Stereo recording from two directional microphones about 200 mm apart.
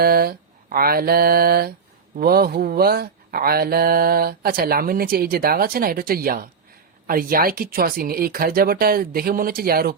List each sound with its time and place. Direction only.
0.0 s mantra: 50° right (ahead or behind)
2.1 s speech: 50° right (ahead or behind)